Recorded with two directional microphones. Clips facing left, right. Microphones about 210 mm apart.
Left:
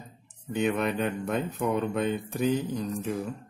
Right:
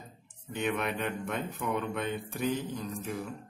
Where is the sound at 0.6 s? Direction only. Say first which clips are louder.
Left 5 dB; 35° left (ahead or behind).